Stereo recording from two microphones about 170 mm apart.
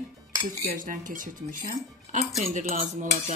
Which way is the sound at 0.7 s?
55° right (ahead or behind).